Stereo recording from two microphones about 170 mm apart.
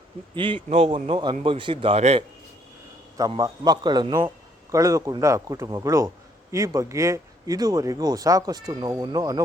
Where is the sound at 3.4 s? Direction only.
20° right (ahead or behind).